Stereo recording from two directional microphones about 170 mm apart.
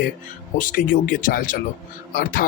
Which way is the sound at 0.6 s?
55° left (ahead or behind).